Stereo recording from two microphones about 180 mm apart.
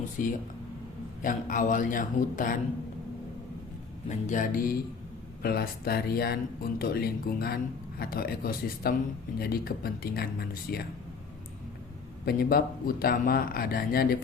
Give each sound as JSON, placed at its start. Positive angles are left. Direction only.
{"t": 0.2, "sound": "a man's voice", "side_deg": 50}
{"t": 4.1, "sound": "a man's voice", "side_deg": 45}
{"t": 12.2, "sound": "speech", "side_deg": 55}